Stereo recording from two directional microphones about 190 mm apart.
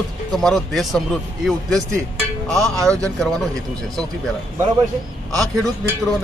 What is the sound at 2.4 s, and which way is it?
Music, centre (ahead or behind).